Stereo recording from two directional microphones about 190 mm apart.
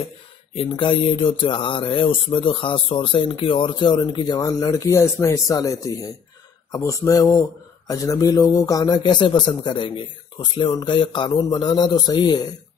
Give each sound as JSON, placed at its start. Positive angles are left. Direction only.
{"t": 0.6, "sound": "speech", "side_deg": 30}